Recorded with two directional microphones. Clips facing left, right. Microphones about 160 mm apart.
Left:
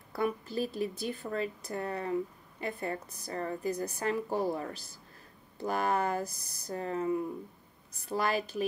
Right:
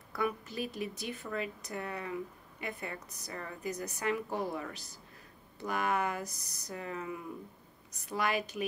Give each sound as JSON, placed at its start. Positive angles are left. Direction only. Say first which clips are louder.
{"t": 0.1, "sound": "a woman's voice", "louder": "left 3 dB", "side_deg": 30}